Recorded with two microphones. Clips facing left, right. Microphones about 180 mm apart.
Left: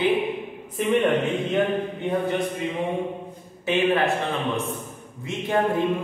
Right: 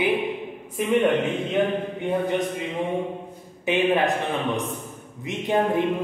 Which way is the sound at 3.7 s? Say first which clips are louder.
Even; 15° right (ahead or behind).